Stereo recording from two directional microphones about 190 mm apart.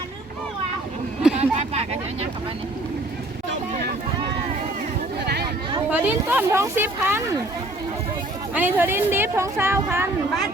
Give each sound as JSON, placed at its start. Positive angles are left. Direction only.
{"t": 1.4, "sound": "a sound", "side_deg": -35}
{"t": 5.9, "sound": "speech", "side_deg": -10}
{"t": 8.5, "sound": "speech", "side_deg": -10}